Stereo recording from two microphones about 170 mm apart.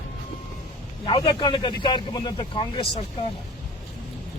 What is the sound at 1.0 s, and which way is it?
Speech, 25° left (ahead or behind).